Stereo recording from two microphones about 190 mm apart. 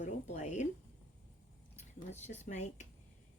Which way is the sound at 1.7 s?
35° left (ahead or behind).